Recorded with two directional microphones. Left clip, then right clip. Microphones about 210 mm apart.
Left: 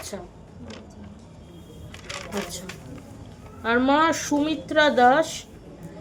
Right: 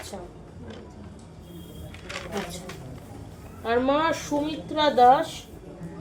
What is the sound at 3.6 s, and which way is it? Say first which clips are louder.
A woman's voice: left 3 dB; 30° left (ahead or behind).